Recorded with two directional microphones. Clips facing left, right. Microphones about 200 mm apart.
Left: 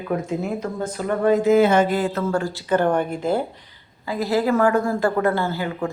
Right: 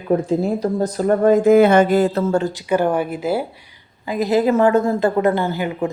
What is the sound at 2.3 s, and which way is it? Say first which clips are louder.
Speech: right 3 dB; 20° right (ahead or behind).